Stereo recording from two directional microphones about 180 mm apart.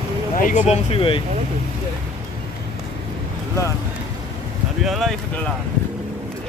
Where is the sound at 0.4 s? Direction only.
45° left (ahead or behind).